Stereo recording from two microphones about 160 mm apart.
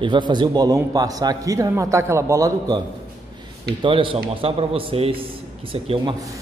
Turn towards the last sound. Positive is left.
turn(degrees=-35)  # may be behind; listen again after turning